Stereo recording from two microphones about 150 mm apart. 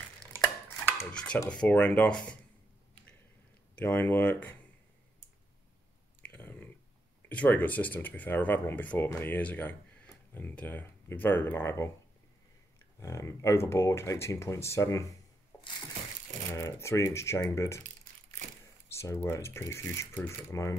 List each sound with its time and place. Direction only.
1.1 s speech: 5° left (ahead or behind)
3.7 s speech: 10° left (ahead or behind)
6.3 s a sound: 10° left (ahead or behind)
7.2 s speech: 10° left (ahead or behind)
13.0 s speech: 20° left (ahead or behind)
15.5 s a sound: 15° left (ahead or behind)
16.5 s speech: 20° left (ahead or behind)
18.9 s speech: 15° left (ahead or behind)